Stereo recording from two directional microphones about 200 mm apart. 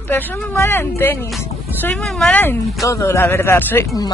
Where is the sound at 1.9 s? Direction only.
Centre (ahead or behind).